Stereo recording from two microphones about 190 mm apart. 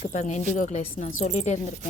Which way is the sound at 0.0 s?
40° left (ahead or behind).